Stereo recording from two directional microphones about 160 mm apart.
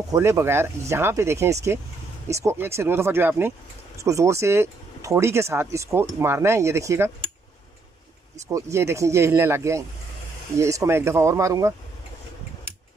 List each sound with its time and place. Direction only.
0.1 s speech: 15° right (ahead or behind)
8.4 s speech: 20° right (ahead or behind)